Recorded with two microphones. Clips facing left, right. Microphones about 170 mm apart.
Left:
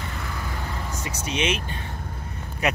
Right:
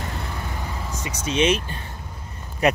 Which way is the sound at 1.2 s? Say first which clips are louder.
Right 6 dB; 30° right (ahead or behind).